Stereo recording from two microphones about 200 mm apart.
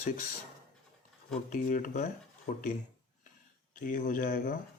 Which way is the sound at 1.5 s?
40° left (ahead or behind).